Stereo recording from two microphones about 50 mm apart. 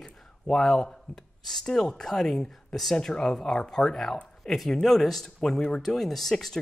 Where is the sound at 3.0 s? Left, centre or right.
Centre.